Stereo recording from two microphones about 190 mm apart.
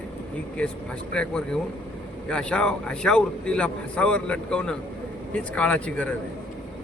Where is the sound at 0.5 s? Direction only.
5° left (ahead or behind).